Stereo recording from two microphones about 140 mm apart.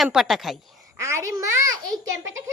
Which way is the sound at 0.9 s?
20° right (ahead or behind).